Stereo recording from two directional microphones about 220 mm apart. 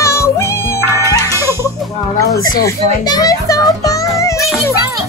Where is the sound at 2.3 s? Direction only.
15° left (ahead or behind).